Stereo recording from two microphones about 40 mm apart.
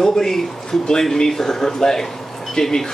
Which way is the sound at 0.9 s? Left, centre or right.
Centre.